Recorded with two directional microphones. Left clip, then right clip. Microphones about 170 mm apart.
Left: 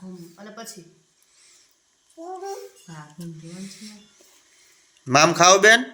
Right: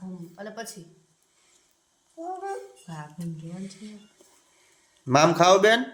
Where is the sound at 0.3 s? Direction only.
50° right (ahead or behind).